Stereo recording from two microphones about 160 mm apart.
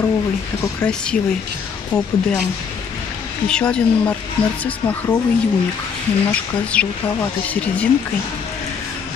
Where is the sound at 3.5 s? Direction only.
5° left (ahead or behind).